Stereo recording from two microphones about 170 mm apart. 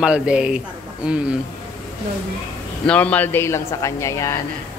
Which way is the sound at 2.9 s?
10° left (ahead or behind).